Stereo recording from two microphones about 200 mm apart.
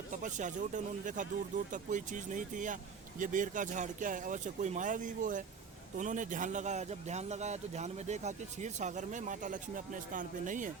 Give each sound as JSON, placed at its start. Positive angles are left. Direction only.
{"t": 0.1, "sound": "speech", "side_deg": -40}